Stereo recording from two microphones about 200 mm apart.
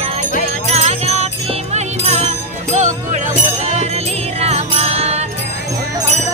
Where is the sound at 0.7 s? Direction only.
30° right (ahead or behind).